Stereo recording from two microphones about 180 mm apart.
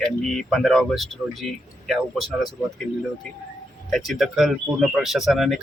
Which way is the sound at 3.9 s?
Centre (ahead or behind).